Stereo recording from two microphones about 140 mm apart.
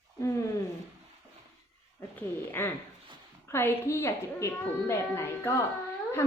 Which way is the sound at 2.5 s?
15° left (ahead or behind).